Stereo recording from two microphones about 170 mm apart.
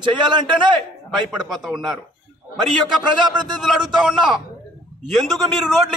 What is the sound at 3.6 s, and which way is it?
A man's voice, centre (ahead or behind).